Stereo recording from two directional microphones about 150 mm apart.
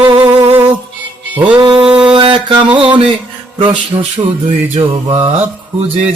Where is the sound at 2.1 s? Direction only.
35° right (ahead or behind).